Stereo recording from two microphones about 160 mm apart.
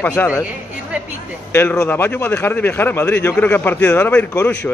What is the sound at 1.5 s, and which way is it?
A man's voice, 15° left (ahead or behind).